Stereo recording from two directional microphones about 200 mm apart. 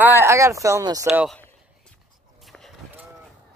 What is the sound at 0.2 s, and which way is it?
Speech, 15° right (ahead or behind).